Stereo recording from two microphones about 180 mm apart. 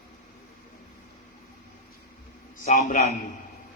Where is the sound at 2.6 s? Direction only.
45° left (ahead or behind).